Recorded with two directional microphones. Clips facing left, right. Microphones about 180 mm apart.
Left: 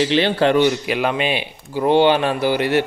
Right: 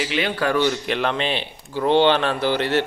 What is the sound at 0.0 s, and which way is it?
Speech, 30° left (ahead or behind).